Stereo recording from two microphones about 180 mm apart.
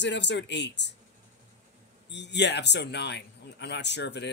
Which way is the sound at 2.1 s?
75° left (ahead or behind).